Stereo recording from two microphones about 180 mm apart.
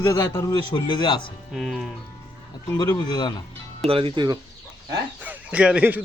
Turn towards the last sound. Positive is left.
turn(degrees=-10)  # may be behind; listen again after turning